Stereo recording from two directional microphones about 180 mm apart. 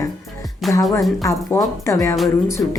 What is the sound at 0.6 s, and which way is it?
Speech, centre (ahead or behind).